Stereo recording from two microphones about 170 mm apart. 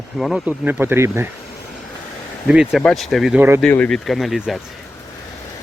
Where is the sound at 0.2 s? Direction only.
Centre (ahead or behind).